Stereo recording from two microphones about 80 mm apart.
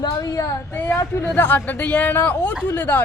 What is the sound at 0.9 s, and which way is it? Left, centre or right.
Speech, left.